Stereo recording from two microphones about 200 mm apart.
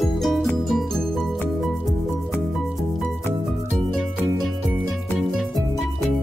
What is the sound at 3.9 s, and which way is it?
Music, centre (ahead or behind).